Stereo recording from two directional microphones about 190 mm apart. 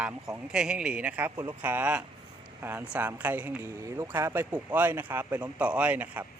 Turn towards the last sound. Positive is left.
turn(degrees=-10)  # may be behind; listen again after turning